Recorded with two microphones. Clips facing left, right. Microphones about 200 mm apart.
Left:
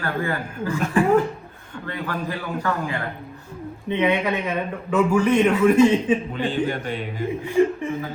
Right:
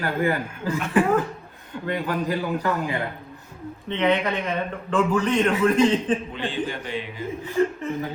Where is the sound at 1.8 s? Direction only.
20° right (ahead or behind).